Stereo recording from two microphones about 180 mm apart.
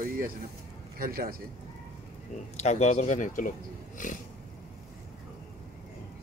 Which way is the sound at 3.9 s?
45° left (ahead or behind).